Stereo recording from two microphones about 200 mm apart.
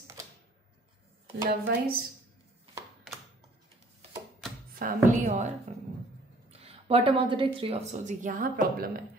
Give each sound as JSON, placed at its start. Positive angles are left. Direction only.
{"t": 1.5, "sound": "a woman's voice", "side_deg": -50}
{"t": 4.7, "sound": "speech", "side_deg": -40}
{"t": 6.5, "sound": "speech", "side_deg": -30}